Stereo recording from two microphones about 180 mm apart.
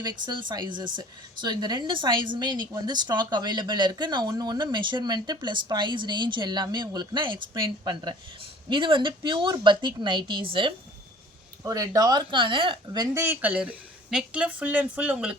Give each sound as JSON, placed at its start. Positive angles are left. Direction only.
{"t": 0.0, "sound": "a woman's voice", "side_deg": -25}